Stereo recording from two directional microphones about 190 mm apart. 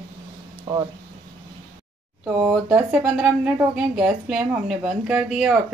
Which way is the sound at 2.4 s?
5° right (ahead or behind).